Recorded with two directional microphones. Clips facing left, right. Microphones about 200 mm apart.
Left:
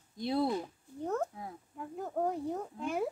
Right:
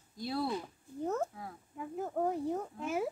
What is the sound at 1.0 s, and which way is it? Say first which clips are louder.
Speech: even; 5° right (ahead or behind).